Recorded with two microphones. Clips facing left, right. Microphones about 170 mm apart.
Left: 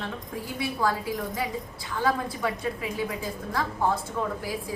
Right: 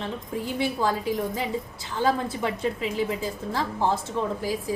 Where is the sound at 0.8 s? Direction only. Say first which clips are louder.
Left 1 dB; 25° right (ahead or behind).